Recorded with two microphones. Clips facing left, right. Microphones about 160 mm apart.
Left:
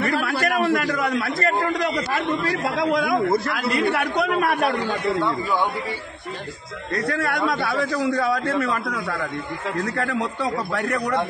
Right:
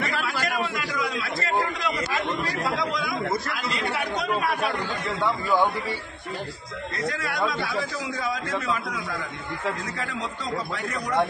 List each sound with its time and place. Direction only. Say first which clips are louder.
0.0 s a man's voice: left 6 dB; 55° left (ahead or behind)
7.1 s a man's voice: left 4 dB; 55° left (ahead or behind)